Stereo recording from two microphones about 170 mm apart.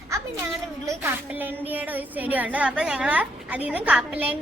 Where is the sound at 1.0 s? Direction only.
10° right (ahead or behind).